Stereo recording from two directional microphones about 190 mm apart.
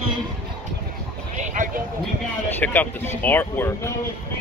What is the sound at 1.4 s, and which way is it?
Speech, 45° right (ahead or behind).